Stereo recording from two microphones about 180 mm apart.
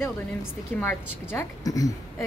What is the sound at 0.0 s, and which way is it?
A woman's voice, 10° left (ahead or behind).